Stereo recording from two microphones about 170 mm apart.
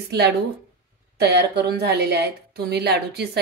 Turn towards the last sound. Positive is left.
turn(degrees=-75)  # may be behind; listen again after turning